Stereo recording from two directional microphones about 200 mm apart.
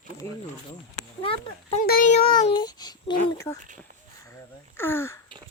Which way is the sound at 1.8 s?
45° left (ahead or behind).